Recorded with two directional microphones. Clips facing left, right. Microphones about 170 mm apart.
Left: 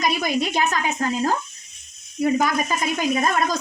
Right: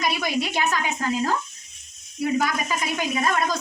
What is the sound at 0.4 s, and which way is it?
Speech, 45° left (ahead or behind).